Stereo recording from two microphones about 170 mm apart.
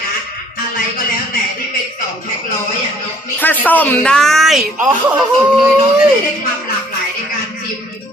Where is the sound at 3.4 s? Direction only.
10° left (ahead or behind).